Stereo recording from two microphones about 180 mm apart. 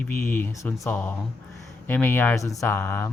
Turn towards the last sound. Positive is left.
turn(degrees=15)  # may be behind; listen again after turning